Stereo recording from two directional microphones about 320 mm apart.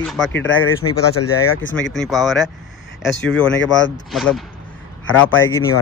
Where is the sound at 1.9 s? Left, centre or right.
Centre.